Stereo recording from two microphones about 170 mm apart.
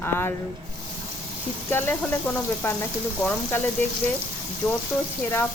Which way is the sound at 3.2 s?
10° left (ahead or behind).